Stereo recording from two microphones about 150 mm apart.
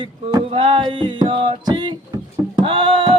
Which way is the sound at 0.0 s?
35° right (ahead or behind).